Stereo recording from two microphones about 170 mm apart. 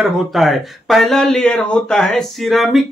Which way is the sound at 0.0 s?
Centre (ahead or behind).